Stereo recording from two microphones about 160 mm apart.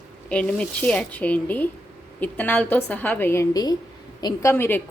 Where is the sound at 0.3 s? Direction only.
10° left (ahead or behind); by 4.5 s 25° left (ahead or behind).